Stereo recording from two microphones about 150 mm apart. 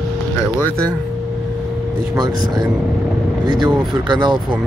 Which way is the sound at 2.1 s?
25° right (ahead or behind).